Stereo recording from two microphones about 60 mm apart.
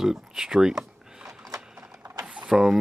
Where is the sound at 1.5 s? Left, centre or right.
Right.